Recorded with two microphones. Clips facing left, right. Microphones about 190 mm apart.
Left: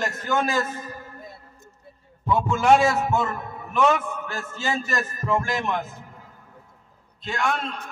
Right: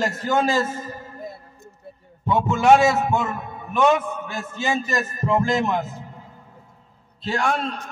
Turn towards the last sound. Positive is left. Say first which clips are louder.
# right 3 dB
turn(degrees=-35)  # may be behind; listen again after turning